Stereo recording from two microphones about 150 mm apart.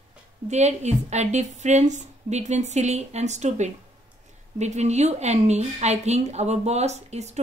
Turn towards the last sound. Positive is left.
turn(degrees=-50)  # may be behind; listen again after turning